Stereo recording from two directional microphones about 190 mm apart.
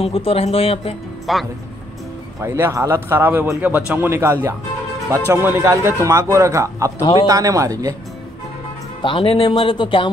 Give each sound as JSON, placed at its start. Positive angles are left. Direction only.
{"t": 0.0, "sound": "speech", "side_deg": 30}
{"t": 1.3, "sound": "speech", "side_deg": 0}
{"t": 2.4, "sound": "a man's voice", "side_deg": -15}
{"t": 9.0, "sound": "speech", "side_deg": 25}